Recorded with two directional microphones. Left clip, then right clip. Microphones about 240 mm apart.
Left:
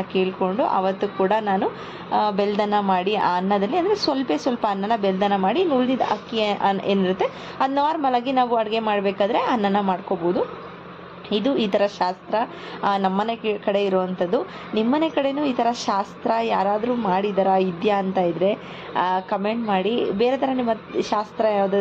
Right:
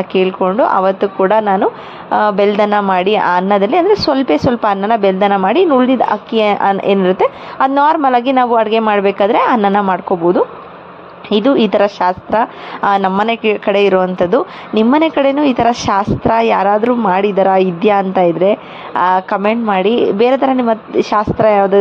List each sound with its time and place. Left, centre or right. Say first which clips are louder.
0.1 s a woman's voice: right 9 dB; right